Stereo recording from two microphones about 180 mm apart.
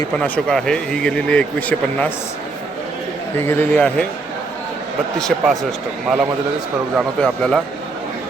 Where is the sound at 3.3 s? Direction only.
15° left (ahead or behind).